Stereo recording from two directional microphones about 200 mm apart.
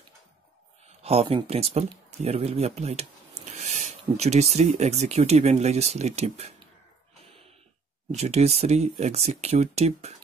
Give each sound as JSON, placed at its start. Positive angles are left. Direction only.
{"t": 1.0, "sound": "speech", "side_deg": -30}
{"t": 8.1, "sound": "speech", "side_deg": -30}